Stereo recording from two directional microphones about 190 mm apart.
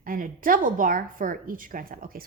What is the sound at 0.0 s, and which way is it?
A woman's voice, 45° right (ahead or behind).